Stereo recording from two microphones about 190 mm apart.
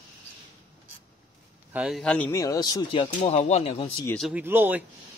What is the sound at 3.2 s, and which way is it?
Speech, 35° left (ahead or behind).